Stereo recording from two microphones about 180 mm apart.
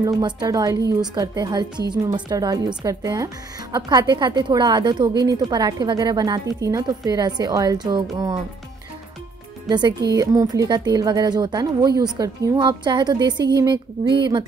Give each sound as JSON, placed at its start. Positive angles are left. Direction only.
{"t": 0.0, "sound": "speech", "side_deg": -25}
{"t": 9.7, "sound": "speech", "side_deg": -25}